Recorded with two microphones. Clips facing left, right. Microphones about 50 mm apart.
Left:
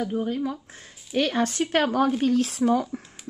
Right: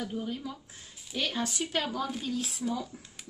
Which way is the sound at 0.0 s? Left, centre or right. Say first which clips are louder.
Left 9 dB; left.